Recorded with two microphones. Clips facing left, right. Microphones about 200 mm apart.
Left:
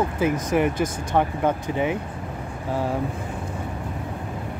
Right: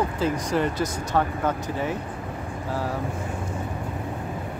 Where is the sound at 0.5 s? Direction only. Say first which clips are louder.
Left 3 dB; 15° left (ahead or behind).